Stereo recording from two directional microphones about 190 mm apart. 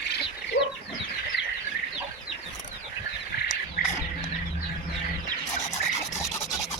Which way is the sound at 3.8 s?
55° left (ahead or behind).